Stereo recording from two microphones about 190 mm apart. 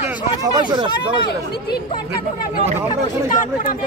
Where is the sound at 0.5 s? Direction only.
25° right (ahead or behind).